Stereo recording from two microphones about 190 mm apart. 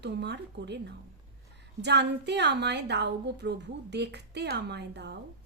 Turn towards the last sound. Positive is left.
turn(degrees=-60)  # may be behind; listen again after turning